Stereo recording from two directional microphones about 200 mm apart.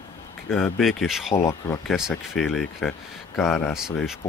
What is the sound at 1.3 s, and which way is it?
Speech, 15° left (ahead or behind).